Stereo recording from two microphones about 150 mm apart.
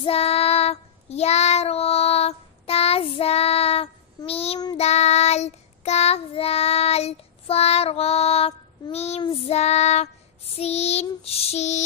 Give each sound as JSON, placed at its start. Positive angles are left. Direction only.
{"t": 0.0, "sound": "child singing", "side_deg": 40}